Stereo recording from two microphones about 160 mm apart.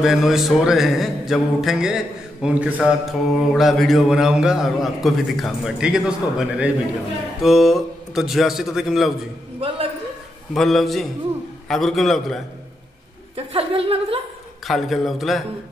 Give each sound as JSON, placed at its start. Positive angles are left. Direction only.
{"t": 0.0, "sound": "mantra", "side_deg": 0}
{"t": 10.5, "sound": "mantra", "side_deg": 0}
{"t": 13.5, "sound": "a woman's voice", "side_deg": -35}
{"t": 14.7, "sound": "mantra", "side_deg": 0}